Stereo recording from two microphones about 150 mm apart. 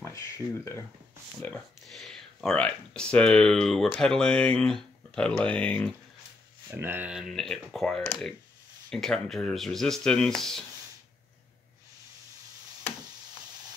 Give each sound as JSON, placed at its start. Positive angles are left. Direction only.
{"t": 0.0, "sound": "speech", "side_deg": 20}
{"t": 1.8, "sound": "speech", "side_deg": 0}
{"t": 6.7, "sound": "speech", "side_deg": -15}